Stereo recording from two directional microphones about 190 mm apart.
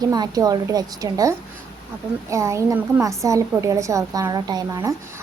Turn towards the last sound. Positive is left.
turn(degrees=-15)  # may be behind; listen again after turning